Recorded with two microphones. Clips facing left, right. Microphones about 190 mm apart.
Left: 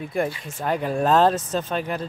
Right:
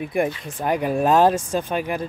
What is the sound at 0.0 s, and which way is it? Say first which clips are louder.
Speech: right 3 dB; 15° right (ahead or behind).